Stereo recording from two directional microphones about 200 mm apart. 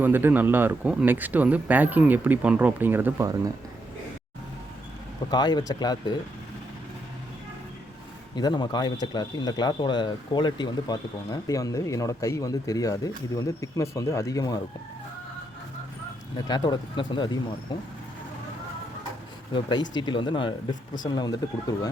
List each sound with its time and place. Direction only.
0.0 s speech: 10° right (ahead or behind)
5.3 s speech: 20° left (ahead or behind)
8.4 s speech: 20° left (ahead or behind)
16.5 s speech: 20° left (ahead or behind)
19.5 s speech: 20° left (ahead or behind)